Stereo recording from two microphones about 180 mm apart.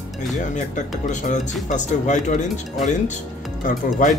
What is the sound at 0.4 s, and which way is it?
Speech, 45° left (ahead or behind).